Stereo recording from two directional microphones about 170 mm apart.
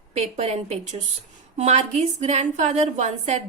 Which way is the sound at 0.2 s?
40° right (ahead or behind).